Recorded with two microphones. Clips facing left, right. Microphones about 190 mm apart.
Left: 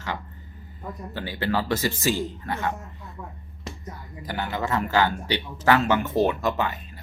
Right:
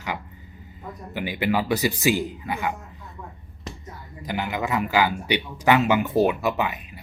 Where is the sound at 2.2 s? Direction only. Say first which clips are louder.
Even; centre (ahead or behind).